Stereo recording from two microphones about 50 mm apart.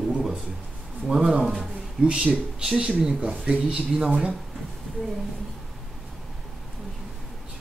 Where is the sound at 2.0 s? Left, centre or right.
Centre.